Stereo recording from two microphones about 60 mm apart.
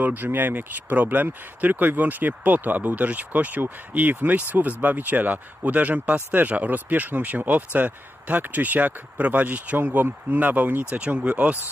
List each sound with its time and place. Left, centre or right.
0.0 s speech: right